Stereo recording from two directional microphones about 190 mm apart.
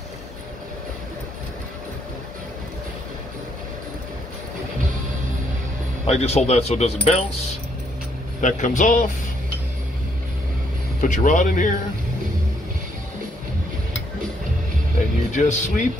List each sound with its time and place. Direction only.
6.0 s speech: 35° left (ahead or behind)
8.4 s speech: 40° left (ahead or behind)
11.0 s speech: 40° left (ahead or behind)
15.3 s speech: 40° left (ahead or behind)